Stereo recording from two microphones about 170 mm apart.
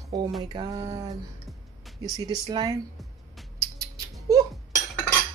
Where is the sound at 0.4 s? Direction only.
25° right (ahead or behind).